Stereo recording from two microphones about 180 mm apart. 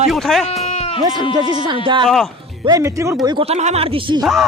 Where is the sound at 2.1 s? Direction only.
Centre (ahead or behind).